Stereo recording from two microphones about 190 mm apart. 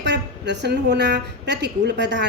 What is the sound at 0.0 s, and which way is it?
A woman's voice, 65° right (ahead or behind).